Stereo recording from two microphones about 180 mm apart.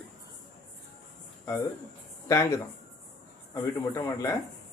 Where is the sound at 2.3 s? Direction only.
15° left (ahead or behind).